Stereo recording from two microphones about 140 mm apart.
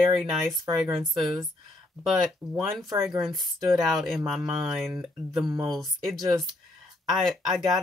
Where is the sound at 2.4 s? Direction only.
20° right (ahead or behind).